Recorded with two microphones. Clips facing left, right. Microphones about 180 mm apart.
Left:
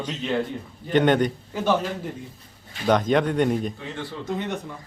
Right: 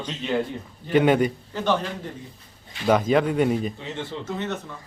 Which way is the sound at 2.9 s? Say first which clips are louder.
Right 1 dB; 5° right (ahead or behind).